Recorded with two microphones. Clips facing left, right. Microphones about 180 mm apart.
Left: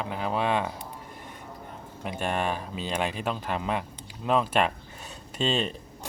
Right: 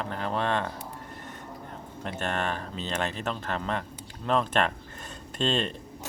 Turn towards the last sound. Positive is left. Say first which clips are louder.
# even
turn(degrees=5)  # may be behind; listen again after turning